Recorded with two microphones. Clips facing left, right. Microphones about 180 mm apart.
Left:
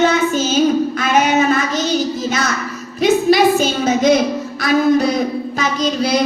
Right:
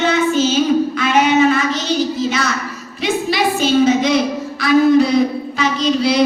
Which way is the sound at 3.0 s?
45° left (ahead or behind).